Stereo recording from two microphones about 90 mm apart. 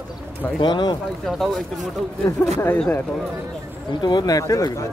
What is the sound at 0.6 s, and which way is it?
Speech, 55° left (ahead or behind).